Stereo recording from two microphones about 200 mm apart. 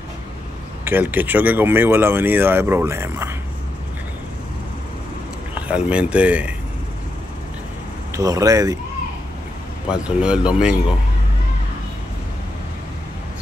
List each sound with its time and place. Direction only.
0.8 s speech: 10° right (ahead or behind)
5.5 s speech: 5° right (ahead or behind)
8.2 s speech: 15° right (ahead or behind)
9.8 s speech: 5° right (ahead or behind)